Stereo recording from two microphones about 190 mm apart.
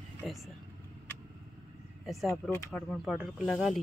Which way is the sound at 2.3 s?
10° left (ahead or behind).